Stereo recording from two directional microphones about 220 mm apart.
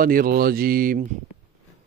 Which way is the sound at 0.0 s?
40° right (ahead or behind).